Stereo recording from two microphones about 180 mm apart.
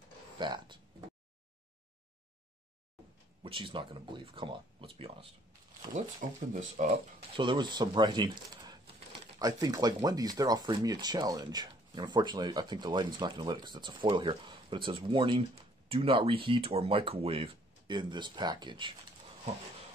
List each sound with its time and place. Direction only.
0.4 s speech: 25° right (ahead or behind)
3.4 s speech: 30° right (ahead or behind)
6.5 s speech: 45° right (ahead or behind)
7.3 s speech: 25° right (ahead or behind)